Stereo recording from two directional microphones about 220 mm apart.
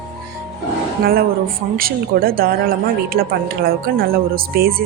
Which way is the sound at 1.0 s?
40° right (ahead or behind).